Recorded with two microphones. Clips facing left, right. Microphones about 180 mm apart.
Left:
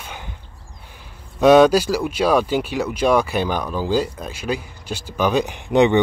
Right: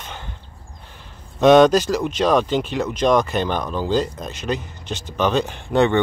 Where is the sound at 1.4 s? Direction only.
5° left (ahead or behind).